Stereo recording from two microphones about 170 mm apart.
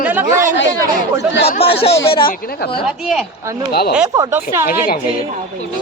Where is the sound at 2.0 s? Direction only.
30° left (ahead or behind).